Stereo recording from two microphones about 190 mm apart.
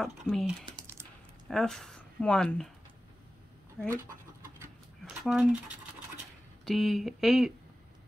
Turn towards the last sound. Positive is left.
turn(degrees=0)  # may be behind; listen again after turning